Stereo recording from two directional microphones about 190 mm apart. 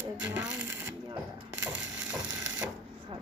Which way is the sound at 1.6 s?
75° right (ahead or behind).